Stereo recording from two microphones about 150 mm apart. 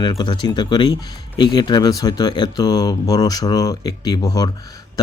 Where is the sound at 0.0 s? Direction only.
30° left (ahead or behind).